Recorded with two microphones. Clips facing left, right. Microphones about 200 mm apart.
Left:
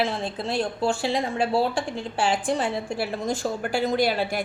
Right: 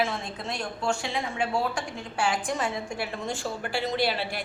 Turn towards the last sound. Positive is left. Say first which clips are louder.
# left 5 dB
turn(degrees=45)  # may be behind; listen again after turning